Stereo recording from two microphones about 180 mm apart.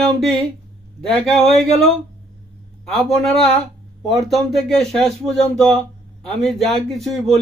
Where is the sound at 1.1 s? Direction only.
Centre (ahead or behind).